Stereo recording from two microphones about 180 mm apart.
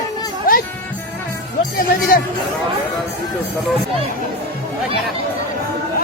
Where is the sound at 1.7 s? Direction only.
55° left (ahead or behind).